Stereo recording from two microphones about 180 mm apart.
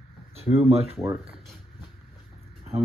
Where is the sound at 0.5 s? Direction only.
35° right (ahead or behind).